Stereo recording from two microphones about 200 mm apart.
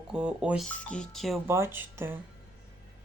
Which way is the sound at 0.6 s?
5° left (ahead or behind).